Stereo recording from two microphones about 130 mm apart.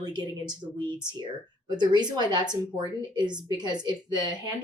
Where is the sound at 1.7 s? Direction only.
35° right (ahead or behind).